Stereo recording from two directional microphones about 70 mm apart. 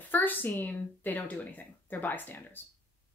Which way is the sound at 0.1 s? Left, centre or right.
Left.